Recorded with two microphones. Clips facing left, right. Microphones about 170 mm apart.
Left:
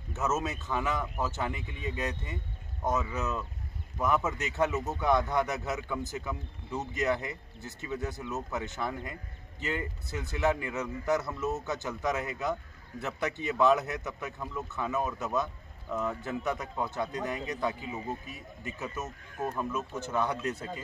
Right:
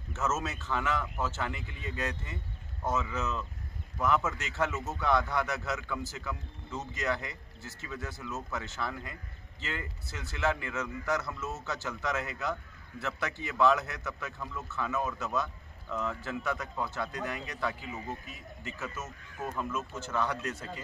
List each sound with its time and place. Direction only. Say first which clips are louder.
0.1 s a man's voice: left 2 dB; 15° left (ahead or behind)
19.5 s a man's voice: left 2 dB; 15° left (ahead or behind)